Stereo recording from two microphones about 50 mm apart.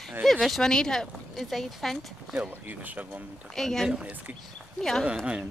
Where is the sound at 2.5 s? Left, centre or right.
Right.